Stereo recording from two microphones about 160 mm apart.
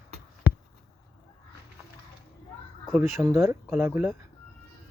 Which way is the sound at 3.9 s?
5° right (ahead or behind).